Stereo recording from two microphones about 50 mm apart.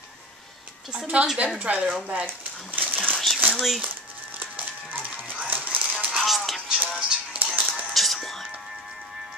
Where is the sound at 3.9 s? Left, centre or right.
Right.